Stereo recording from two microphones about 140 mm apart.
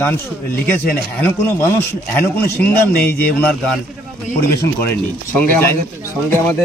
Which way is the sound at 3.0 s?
90° left.